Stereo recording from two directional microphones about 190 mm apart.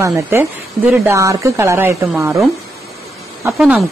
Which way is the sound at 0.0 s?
15° right (ahead or behind).